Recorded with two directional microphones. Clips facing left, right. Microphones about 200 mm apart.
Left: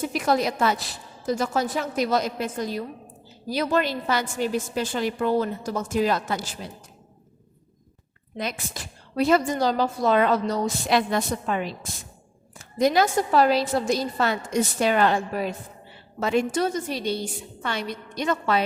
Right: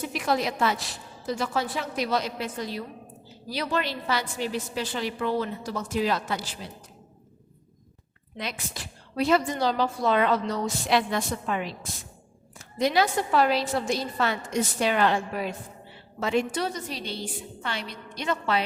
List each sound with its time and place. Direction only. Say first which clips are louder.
0.1 s a woman's voice: left 2 dB; 40° left (ahead or behind)
8.4 s a woman's voice: left 4 dB; 45° left (ahead or behind)
12.8 s a woman's voice: left 3 dB; 45° left (ahead or behind)
18.1 s a woman's voice: left 3 dB; 45° left (ahead or behind)